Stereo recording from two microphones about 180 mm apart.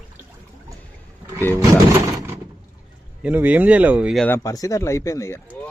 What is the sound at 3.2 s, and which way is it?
Speech, 10° right (ahead or behind).